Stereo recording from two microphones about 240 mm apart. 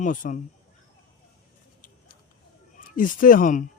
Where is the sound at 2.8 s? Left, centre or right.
Left.